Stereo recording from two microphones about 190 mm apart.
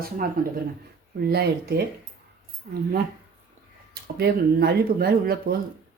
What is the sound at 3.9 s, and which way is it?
Speech, 60° right (ahead or behind).